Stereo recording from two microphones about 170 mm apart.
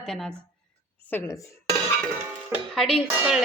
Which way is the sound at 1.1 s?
15° left (ahead or behind).